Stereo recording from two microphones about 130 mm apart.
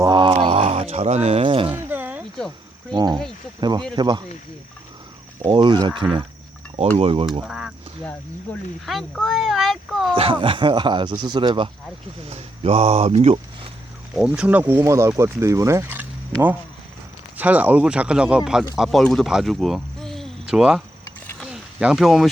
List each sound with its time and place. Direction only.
0.0 s a sound: 35° right (ahead or behind)
1.7 s a sound: 15° right (ahead or behind)
2.9 s speech: 35° right (ahead or behind)
5.5 s speech: 35° right (ahead or behind)
7.4 s speech: 5° right (ahead or behind)
8.9 s speech: centre (ahead or behind)
10.2 s speech: 45° right (ahead or behind)
12.3 s speech: 50° right (ahead or behind)
14.2 s speech: 10° right (ahead or behind)
17.3 s speech: 10° right (ahead or behind)
21.4 s a sound: 5° right (ahead or behind)